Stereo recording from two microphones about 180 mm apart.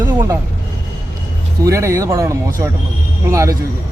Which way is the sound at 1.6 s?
15° right (ahead or behind).